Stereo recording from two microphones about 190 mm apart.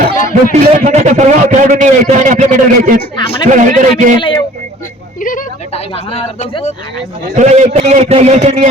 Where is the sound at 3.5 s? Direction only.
40° right (ahead or behind).